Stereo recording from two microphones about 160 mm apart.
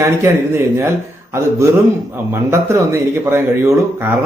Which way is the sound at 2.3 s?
15° right (ahead or behind).